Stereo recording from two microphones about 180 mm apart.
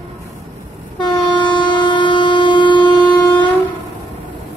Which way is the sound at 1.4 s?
25° left (ahead or behind).